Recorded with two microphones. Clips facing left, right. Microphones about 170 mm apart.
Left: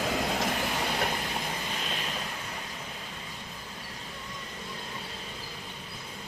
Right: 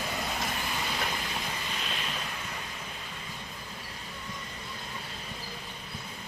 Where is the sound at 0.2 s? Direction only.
80° left; by 1.1 s 55° left (ahead or behind).